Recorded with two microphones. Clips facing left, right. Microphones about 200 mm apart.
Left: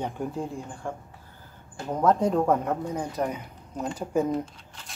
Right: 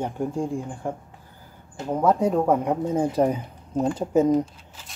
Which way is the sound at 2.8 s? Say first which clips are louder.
Right 8 dB; 25° right (ahead or behind).